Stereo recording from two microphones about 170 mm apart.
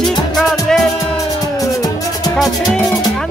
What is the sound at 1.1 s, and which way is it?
Music, 20° left (ahead or behind).